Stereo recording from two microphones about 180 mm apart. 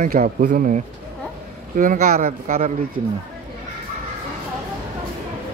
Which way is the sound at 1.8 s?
50° right (ahead or behind).